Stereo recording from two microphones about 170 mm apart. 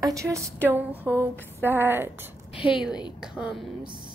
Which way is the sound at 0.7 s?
10° right (ahead or behind).